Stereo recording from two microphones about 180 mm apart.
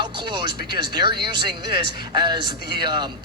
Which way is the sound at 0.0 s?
25° right (ahead or behind).